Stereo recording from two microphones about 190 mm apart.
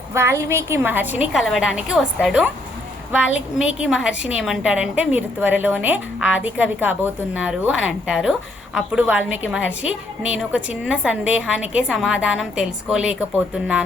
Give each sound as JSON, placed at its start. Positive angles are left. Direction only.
{"t": 0.1, "sound": "a woman's voice", "side_deg": -15}
{"t": 3.2, "sound": "a woman's voice", "side_deg": 90}
{"t": 3.8, "sound": "a woman's voice", "side_deg": -5}